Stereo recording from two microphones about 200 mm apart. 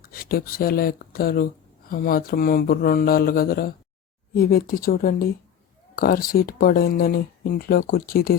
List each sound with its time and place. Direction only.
0.0 s speech: 45° left (ahead or behind)